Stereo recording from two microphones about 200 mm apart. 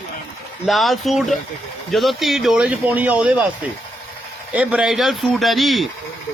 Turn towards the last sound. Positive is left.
turn(degrees=0)  # may be behind; listen again after turning